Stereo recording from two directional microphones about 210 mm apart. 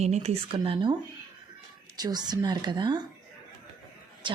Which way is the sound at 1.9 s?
20° right (ahead or behind).